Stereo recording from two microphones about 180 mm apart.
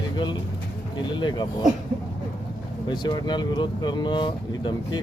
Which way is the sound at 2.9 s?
25° left (ahead or behind).